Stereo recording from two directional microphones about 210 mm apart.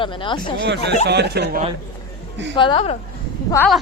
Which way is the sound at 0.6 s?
55° right (ahead or behind).